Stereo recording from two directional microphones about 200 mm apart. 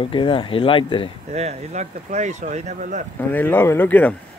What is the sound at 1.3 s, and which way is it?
Speech, 35° right (ahead or behind).